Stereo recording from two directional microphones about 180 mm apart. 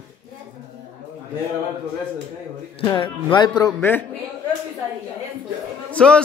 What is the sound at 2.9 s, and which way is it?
Speech, 25° left (ahead or behind).